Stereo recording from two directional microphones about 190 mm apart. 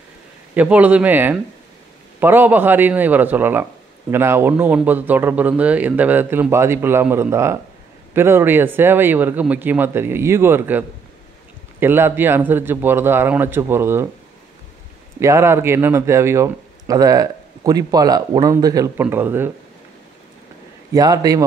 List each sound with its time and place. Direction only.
0.6 s a man's voice: 5° right (ahead or behind)
15.1 s a man's voice: 15° right (ahead or behind)
20.9 s a man's voice: 20° right (ahead or behind)